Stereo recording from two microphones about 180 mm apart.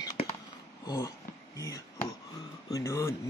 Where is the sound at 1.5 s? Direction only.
20° left (ahead or behind).